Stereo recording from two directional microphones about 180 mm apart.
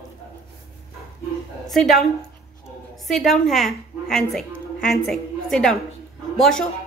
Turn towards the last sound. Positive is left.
turn(degrees=5)  # may be behind; listen again after turning